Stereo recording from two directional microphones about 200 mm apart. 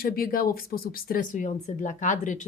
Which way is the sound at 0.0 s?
45° left (ahead or behind).